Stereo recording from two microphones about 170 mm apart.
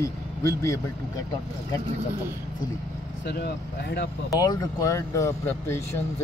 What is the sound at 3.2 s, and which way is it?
Speech, 70° left (ahead or behind).